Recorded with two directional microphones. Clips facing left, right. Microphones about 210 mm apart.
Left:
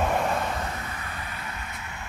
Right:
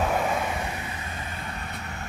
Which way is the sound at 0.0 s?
Centre (ahead or behind).